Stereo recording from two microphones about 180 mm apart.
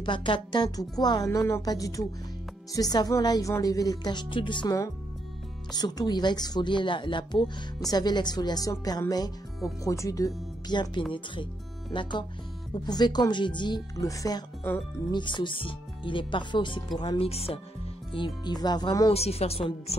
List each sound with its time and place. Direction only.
0.0 s speech: 25° left (ahead or behind)
19.1 s speech: 35° left (ahead or behind)